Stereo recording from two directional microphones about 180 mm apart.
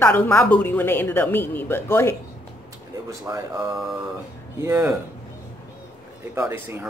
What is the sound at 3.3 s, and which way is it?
Speech, 15° right (ahead or behind).